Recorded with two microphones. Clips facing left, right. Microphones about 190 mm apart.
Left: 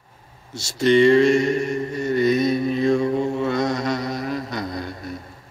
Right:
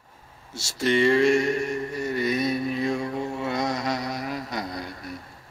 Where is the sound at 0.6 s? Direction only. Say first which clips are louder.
Left 7 dB; 20° left (ahead or behind).